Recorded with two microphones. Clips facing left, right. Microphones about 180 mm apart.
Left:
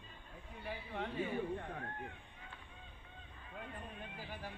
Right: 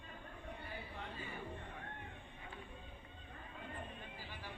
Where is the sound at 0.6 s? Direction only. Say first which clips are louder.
Left 10 dB; 70° left (ahead or behind).